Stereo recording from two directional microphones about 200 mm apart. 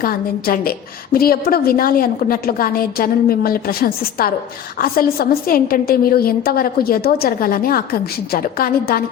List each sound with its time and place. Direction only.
0.0 s a woman's voice: 50° left (ahead or behind)